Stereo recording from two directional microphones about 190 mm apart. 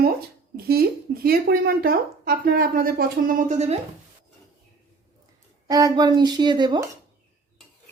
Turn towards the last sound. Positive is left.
turn(degrees=-25)  # may be behind; listen again after turning